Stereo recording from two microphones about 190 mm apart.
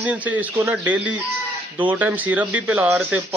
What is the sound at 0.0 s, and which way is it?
Speech, 10° right (ahead or behind).